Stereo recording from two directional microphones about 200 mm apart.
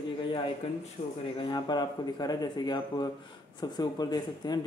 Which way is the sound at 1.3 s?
25° left (ahead or behind).